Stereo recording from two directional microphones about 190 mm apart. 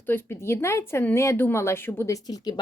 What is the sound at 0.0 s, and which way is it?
A woman's voice, 10° left (ahead or behind).